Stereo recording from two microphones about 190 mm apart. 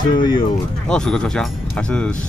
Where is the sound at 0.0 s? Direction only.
25° left (ahead or behind).